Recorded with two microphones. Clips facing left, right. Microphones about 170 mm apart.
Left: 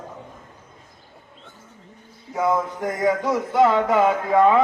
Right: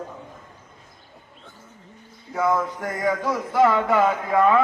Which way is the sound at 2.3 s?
20° left (ahead or behind).